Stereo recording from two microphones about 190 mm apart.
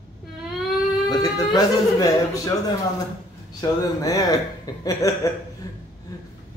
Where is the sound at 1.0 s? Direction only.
20° left (ahead or behind).